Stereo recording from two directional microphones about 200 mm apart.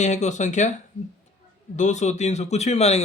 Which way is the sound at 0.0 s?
35° left (ahead or behind).